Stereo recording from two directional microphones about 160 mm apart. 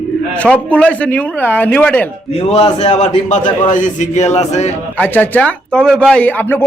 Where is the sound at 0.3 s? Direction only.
10° left (ahead or behind).